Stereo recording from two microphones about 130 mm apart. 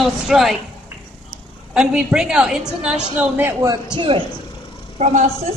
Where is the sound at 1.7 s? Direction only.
5° right (ahead or behind).